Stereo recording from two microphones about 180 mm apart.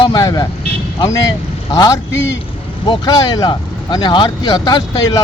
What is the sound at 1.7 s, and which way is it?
Speech, 20° left (ahead or behind).